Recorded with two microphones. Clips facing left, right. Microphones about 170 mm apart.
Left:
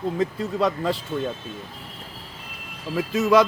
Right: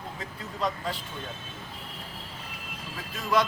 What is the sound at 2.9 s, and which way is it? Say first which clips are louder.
Speech: left 9 dB; 90° left.